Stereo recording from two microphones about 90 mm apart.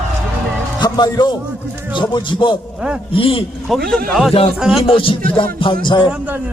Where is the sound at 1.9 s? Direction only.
60° left (ahead or behind).